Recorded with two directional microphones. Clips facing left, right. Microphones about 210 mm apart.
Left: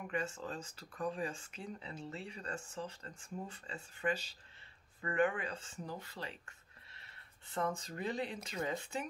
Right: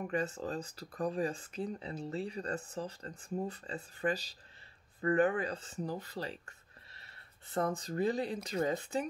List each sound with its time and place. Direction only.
0.0 s speech: 35° right (ahead or behind)